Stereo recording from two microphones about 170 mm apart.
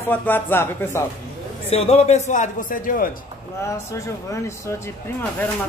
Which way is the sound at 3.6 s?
15° left (ahead or behind).